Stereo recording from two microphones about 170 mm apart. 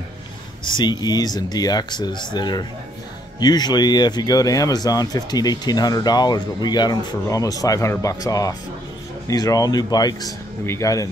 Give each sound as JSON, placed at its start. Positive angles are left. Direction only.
{"t": 0.7, "sound": "speech", "side_deg": 25}